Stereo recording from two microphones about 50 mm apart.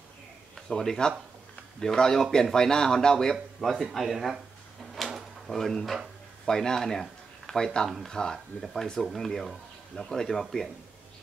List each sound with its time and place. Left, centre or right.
0.7 s speech: centre
3.6 s speech: centre
4.9 s drawer open or close: centre
6.4 s speech: centre